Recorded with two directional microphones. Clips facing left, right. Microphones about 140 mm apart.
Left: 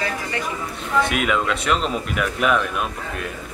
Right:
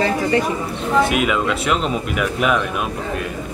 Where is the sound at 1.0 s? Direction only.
5° right (ahead or behind).